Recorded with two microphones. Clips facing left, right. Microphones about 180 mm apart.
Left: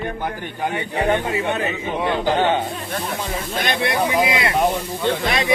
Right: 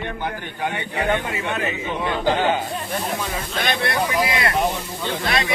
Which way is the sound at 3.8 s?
20° left (ahead or behind).